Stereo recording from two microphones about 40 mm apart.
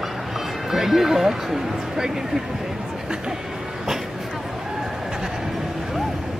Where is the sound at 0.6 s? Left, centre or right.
Centre.